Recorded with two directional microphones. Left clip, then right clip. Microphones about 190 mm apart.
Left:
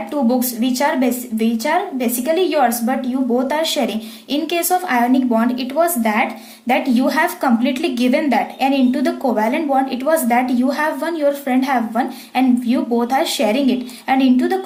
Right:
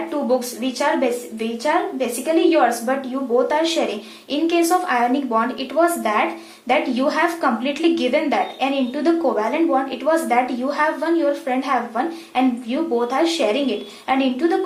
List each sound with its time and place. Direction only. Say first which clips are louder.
0.3 s a woman's voice: even; 40° left (ahead or behind)